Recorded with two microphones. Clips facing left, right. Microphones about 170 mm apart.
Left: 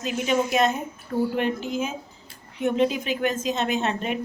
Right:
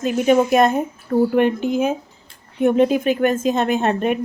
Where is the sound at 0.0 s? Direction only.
50° right (ahead or behind).